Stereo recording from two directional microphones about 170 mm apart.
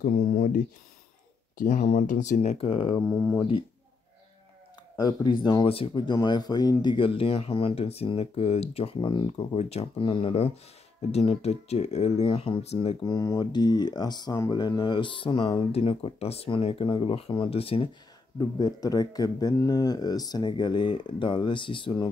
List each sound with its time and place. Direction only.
0.0 s speech: 45° left (ahead or behind)
1.6 s speech: 45° left (ahead or behind); by 3.0 s 30° left (ahead or behind)
3.0 s speech: 15° left (ahead or behind)
4.9 s speech: 25° left (ahead or behind)
13.0 s speech: 20° left (ahead or behind)
18.4 s speech: 20° left (ahead or behind)